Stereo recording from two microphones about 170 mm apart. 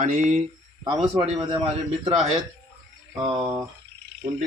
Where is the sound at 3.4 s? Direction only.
15° right (ahead or behind).